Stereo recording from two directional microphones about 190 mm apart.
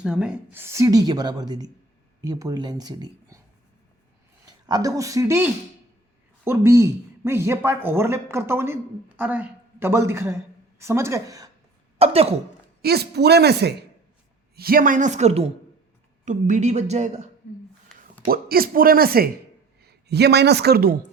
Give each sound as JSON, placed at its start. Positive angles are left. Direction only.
{"t": 0.0, "sound": "a woman's voice", "side_deg": -5}
{"t": 4.4, "sound": "speech", "side_deg": -20}
{"t": 11.9, "sound": "cough", "side_deg": -30}
{"t": 12.8, "sound": "a woman's voice", "side_deg": -55}
{"t": 18.3, "sound": "a man's voice", "side_deg": -50}